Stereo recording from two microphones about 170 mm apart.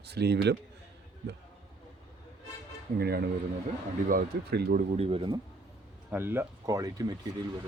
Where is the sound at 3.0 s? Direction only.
65° right (ahead or behind).